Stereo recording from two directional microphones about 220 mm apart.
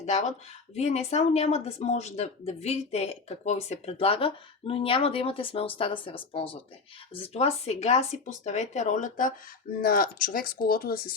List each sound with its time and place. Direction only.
0.0 s speech: 30° left (ahead or behind)